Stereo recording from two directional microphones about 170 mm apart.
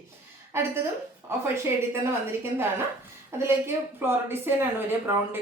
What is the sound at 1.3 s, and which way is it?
A woman's voice, 15° right (ahead or behind).